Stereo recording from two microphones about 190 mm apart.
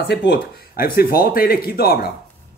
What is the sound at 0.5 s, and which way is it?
Speech, 50° left (ahead or behind).